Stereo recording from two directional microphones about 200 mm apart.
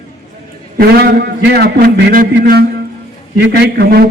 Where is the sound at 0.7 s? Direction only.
50° right (ahead or behind).